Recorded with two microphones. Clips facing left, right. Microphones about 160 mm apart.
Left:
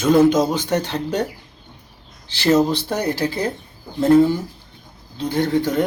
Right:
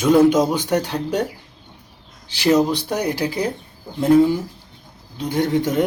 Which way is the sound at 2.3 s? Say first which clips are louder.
Even; 10° right (ahead or behind).